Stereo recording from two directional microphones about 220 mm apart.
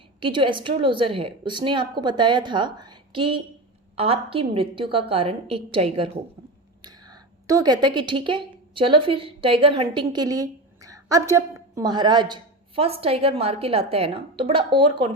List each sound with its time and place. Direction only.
0.2 s a woman's voice: 20° right (ahead or behind)